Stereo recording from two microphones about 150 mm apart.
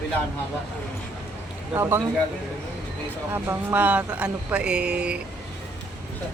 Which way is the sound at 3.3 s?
15° right (ahead or behind).